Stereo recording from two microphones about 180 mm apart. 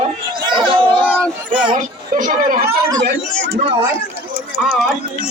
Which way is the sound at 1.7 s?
50° right (ahead or behind).